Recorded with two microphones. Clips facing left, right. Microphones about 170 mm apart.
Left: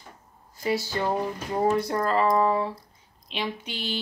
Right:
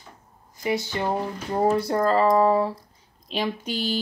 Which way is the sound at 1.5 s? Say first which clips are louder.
Right 3 dB; 30° right (ahead or behind).